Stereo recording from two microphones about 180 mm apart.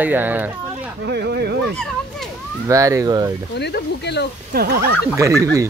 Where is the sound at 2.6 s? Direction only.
15° right (ahead or behind).